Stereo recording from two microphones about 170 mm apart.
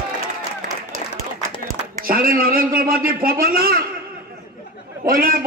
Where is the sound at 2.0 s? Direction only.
60° right (ahead or behind).